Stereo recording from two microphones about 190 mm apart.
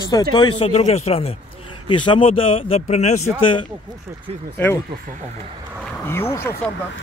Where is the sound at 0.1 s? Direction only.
25° left (ahead or behind).